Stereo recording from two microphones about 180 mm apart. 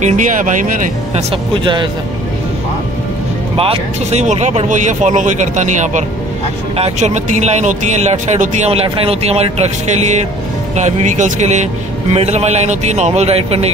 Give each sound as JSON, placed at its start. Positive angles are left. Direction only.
{"t": 0.0, "sound": "speech", "side_deg": -45}
{"t": 1.1, "sound": "speech", "side_deg": -30}
{"t": 3.5, "sound": "speech", "side_deg": -30}